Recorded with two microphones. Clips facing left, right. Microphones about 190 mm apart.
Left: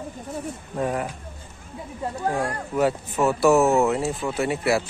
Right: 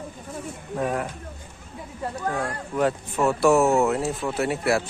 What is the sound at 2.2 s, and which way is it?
Speech, 25° left (ahead or behind).